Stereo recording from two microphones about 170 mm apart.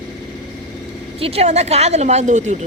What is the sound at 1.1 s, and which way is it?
A woman's voice, 35° right (ahead or behind).